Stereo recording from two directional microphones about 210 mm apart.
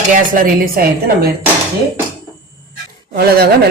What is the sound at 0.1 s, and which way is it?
Speech, 40° right (ahead or behind).